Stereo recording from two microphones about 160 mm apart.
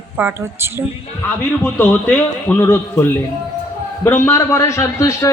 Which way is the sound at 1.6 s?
10° left (ahead or behind).